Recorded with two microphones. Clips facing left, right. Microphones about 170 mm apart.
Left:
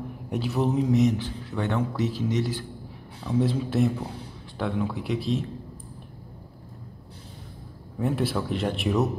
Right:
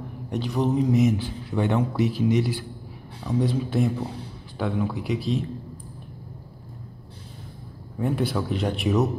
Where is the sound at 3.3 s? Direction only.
Centre (ahead or behind).